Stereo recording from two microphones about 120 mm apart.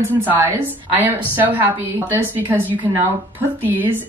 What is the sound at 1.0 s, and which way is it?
Speech, 15° right (ahead or behind).